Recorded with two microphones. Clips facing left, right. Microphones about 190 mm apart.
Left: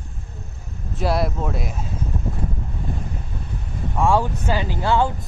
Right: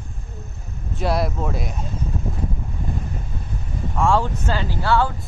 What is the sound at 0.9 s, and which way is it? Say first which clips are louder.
Speech: even; centre (ahead or behind).